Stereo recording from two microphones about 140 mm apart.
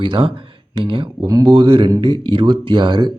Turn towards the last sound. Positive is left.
turn(degrees=-35)  # may be behind; listen again after turning